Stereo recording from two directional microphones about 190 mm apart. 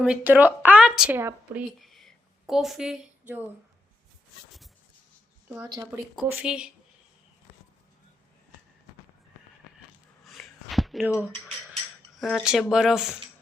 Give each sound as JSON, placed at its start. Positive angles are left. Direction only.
{"t": 0.0, "sound": "speech", "side_deg": -5}
{"t": 1.8, "sound": "a sound", "side_deg": 0}
{"t": 5.6, "sound": "a woman's voice", "side_deg": -20}
{"t": 6.2, "sound": "speech", "side_deg": -5}
{"t": 10.2, "sound": "a sound", "side_deg": 0}
{"t": 12.1, "sound": "speech", "side_deg": 0}